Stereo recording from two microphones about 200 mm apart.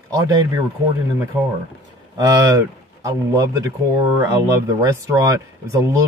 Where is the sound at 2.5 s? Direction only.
15° right (ahead or behind).